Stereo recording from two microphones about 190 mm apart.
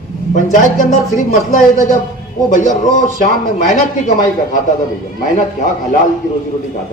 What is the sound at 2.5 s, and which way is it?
A man's voice, 40° left (ahead or behind).